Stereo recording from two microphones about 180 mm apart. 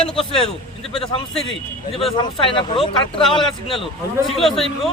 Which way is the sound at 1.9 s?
30° left (ahead or behind).